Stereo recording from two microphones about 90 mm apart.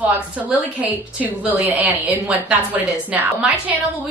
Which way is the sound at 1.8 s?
20° right (ahead or behind).